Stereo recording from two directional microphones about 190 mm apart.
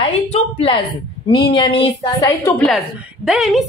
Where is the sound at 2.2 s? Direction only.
15° left (ahead or behind).